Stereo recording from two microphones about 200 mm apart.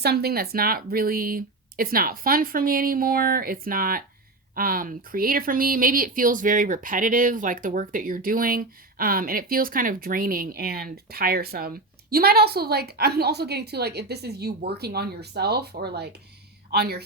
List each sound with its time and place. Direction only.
0.0 s speech: 50° right (ahead or behind)